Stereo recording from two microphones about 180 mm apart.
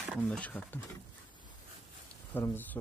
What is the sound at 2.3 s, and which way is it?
Speech, 10° left (ahead or behind).